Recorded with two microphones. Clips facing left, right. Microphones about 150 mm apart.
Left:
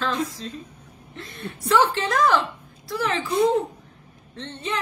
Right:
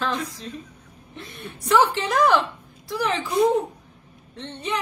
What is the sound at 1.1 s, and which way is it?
A woman's voice, 15° right (ahead or behind).